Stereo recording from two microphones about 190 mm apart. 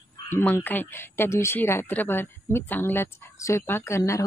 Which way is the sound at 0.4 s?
10° left (ahead or behind).